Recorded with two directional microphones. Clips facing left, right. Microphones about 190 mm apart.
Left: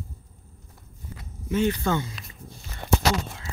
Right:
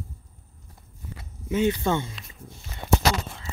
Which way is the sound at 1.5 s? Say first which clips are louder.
Right 1 dB; 20° right (ahead or behind).